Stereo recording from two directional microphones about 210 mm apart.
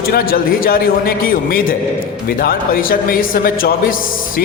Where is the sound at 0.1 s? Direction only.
45° left (ahead or behind).